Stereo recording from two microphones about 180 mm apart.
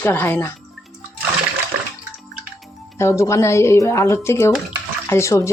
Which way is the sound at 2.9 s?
15° left (ahead or behind).